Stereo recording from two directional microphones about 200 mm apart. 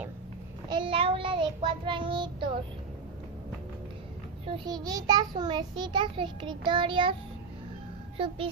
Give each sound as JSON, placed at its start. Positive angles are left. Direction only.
{"t": 0.7, "sound": "a child's voice", "side_deg": -25}
{"t": 4.5, "sound": "a child's voice", "side_deg": -20}